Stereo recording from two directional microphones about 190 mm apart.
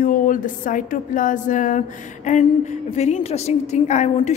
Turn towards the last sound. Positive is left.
turn(degrees=35)  # may be behind; listen again after turning